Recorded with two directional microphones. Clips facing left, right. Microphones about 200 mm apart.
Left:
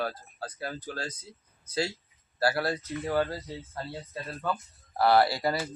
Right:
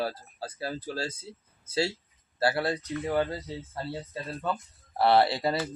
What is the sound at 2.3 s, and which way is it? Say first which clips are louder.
Speech: right 1 dB; 25° right (ahead or behind).